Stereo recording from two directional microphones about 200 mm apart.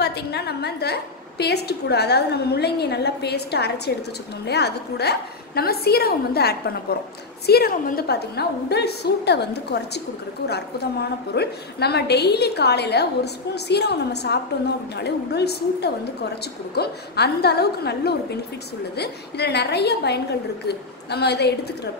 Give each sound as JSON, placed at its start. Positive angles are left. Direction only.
{"t": 0.0, "sound": "a woman's voice", "side_deg": 55}